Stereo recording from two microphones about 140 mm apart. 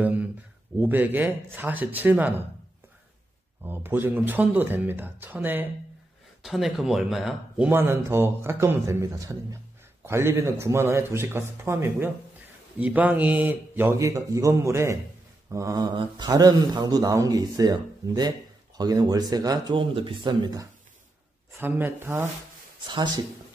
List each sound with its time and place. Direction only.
0.0 s a man's voice: 10° right (ahead or behind)
3.6 s a man's voice: 15° right (ahead or behind)
6.4 s speech: centre (ahead or behind)
7.7 s a man's voice: 15° right (ahead or behind)
21.5 s a man's voice: 15° right (ahead or behind)
22.8 s speech: 30° right (ahead or behind)